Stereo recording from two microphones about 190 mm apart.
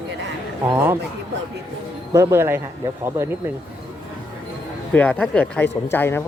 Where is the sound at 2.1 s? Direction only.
15° right (ahead or behind).